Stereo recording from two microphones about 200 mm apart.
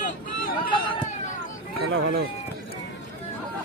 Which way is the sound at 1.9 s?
70° right (ahead or behind).